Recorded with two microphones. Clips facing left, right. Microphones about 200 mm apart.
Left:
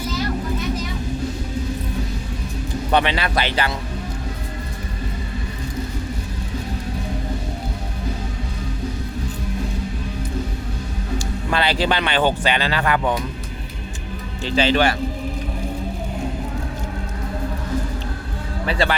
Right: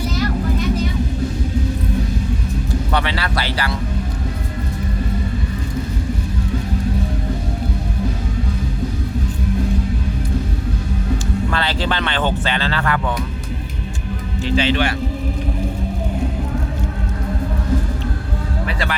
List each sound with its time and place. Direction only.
2.9 s speech: 20° left (ahead or behind)
11.5 s speech: 15° left (ahead or behind)
14.4 s speech: 35° left (ahead or behind)
18.7 s speech: 30° left (ahead or behind)